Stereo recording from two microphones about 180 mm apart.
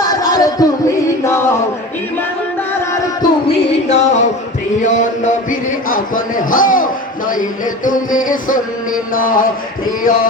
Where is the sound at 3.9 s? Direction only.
40° left (ahead or behind).